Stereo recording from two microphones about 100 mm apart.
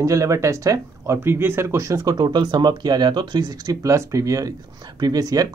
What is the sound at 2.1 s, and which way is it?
Speech, 50° right (ahead or behind).